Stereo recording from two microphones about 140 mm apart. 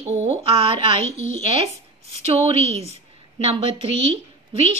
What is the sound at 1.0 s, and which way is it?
Speech, 60° left (ahead or behind).